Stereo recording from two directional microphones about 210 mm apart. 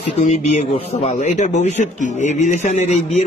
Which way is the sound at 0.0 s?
30° left (ahead or behind).